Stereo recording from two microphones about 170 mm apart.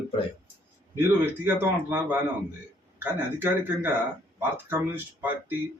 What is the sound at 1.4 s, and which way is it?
Speech, 10° right (ahead or behind).